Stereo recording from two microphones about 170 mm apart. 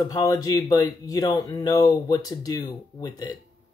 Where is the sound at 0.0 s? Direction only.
20° left (ahead or behind).